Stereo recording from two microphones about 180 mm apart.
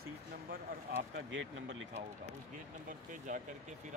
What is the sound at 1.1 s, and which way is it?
Speech, 90° right.